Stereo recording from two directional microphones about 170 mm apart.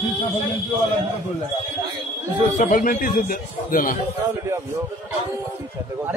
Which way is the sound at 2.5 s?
55° left (ahead or behind).